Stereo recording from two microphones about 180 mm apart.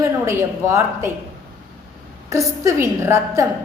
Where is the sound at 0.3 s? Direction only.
15° right (ahead or behind).